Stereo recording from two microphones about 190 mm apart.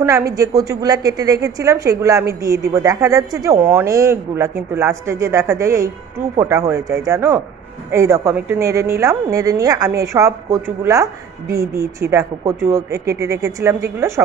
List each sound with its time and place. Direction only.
0.0 s a woman's voice: 15° right (ahead or behind)